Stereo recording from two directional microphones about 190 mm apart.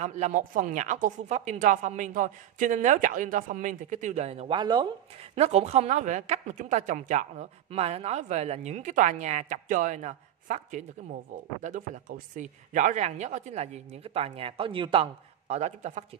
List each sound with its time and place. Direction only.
0.0 s a woman's voice: 40° right (ahead or behind)
5.3 s a woman's voice: 35° right (ahead or behind)